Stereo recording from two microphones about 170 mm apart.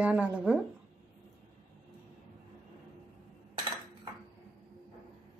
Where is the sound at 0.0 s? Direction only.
5° right (ahead or behind).